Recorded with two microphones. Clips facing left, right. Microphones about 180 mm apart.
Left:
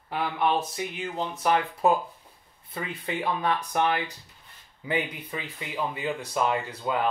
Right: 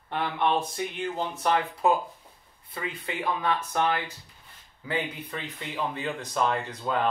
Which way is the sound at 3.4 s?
20° left (ahead or behind).